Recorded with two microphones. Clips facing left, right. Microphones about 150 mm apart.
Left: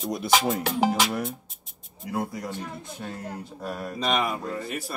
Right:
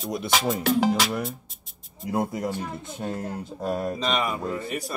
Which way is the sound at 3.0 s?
35° right (ahead or behind).